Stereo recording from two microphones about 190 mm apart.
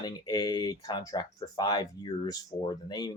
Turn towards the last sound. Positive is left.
turn(degrees=20)  # may be behind; listen again after turning